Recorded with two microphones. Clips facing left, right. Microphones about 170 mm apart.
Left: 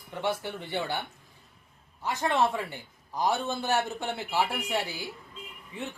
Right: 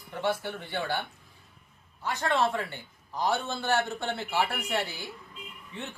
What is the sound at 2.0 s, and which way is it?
A man's voice, 15° left (ahead or behind).